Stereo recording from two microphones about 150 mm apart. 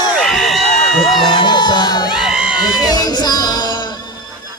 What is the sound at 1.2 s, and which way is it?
Crowd, 30° left (ahead or behind).